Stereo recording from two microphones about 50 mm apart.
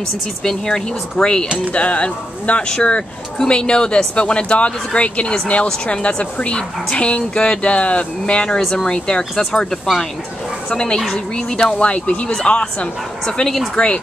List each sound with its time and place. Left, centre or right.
0.4 s speech: centre
1.7 s speech: left
8.5 s speech: centre